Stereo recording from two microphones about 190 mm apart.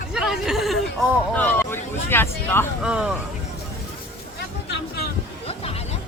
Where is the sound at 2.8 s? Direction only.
5° right (ahead or behind).